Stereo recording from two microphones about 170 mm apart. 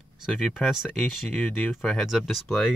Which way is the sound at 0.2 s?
Centre (ahead or behind).